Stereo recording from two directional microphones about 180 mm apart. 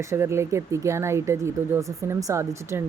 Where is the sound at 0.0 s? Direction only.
15° right (ahead or behind).